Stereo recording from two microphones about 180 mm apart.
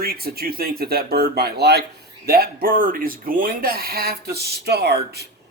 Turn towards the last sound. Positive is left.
turn(degrees=-65)  # may be behind; listen again after turning